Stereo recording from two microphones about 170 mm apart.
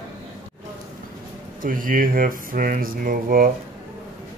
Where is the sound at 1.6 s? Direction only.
55° right (ahead or behind).